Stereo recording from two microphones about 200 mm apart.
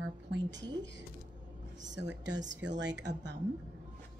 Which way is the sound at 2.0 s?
65° right (ahead or behind).